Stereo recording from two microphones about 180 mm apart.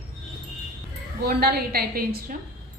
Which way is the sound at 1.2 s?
60° right (ahead or behind).